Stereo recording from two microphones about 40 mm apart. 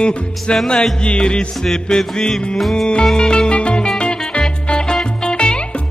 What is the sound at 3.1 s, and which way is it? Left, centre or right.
Music, centre.